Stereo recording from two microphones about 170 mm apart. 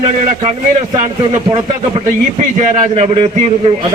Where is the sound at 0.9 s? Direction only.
25° right (ahead or behind).